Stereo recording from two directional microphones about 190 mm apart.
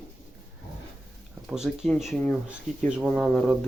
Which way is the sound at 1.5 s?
5° right (ahead or behind).